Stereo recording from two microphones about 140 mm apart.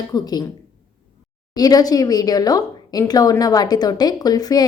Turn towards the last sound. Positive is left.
turn(degrees=25)  # may be behind; listen again after turning